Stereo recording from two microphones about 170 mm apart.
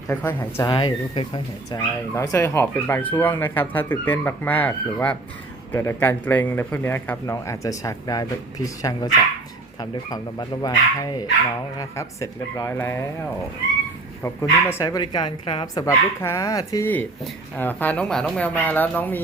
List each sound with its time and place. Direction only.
0.1 s speech: 10° left (ahead or behind)
0.6 s speech: 25° left (ahead or behind)
2.1 s speech: 15° left (ahead or behind)
14.2 s speech: 15° left (ahead or behind)